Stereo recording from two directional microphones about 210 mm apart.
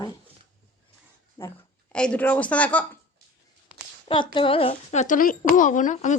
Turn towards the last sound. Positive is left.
turn(degrees=35)  # may be behind; listen again after turning